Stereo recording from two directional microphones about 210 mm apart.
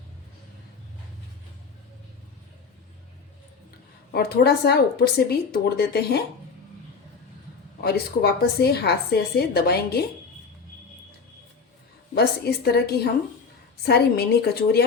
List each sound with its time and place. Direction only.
4.1 s speech: 50° left (ahead or behind)
7.8 s speech: 50° left (ahead or behind)
12.1 s speech: 50° left (ahead or behind)